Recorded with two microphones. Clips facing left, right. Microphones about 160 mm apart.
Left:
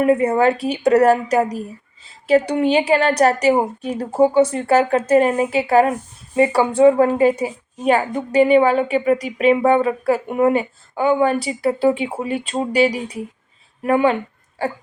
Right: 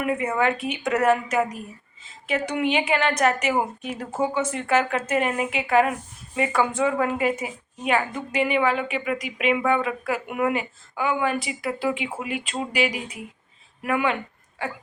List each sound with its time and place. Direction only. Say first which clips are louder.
0.0 s a woman's voice: left 8 dB; 35° left (ahead or behind)